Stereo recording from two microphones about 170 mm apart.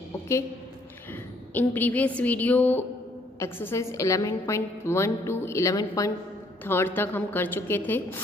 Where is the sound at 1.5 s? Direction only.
10° left (ahead or behind).